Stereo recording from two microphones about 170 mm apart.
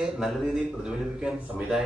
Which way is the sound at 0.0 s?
Centre (ahead or behind).